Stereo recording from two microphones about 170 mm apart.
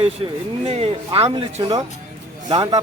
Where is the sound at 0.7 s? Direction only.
35° right (ahead or behind).